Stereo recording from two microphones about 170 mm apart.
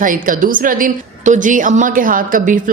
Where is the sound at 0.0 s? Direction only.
50° right (ahead or behind).